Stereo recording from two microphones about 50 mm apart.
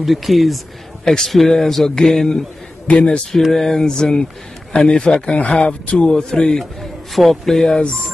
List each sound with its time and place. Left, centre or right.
0.0 s a man's voice: centre
2.9 s speech: left
3.5 s a man's voice: centre